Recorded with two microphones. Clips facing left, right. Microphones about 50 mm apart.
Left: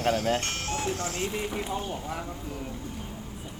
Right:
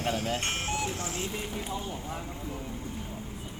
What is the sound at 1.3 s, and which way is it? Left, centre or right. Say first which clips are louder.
Speech: left 4 dB; left.